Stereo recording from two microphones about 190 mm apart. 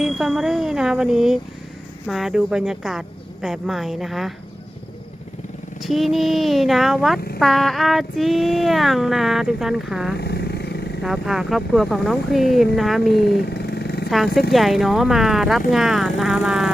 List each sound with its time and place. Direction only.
0.0 s child singing: centre (ahead or behind)
5.8 s child singing: centre (ahead or behind)
10.2 s vehicle: 60° left (ahead or behind)
11.0 s child singing: centre (ahead or behind)
13.7 s vehicle: 60° left (ahead or behind)
14.5 s child singing: centre (ahead or behind)